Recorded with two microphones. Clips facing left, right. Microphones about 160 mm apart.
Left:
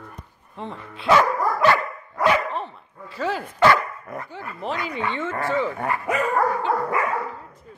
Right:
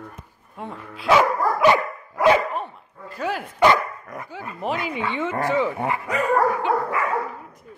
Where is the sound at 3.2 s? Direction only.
10° right (ahead or behind).